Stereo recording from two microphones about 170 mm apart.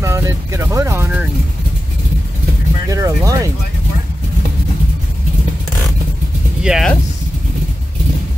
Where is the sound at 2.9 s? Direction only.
20° right (ahead or behind).